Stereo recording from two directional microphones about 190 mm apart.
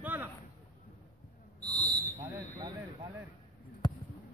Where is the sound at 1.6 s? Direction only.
20° right (ahead or behind).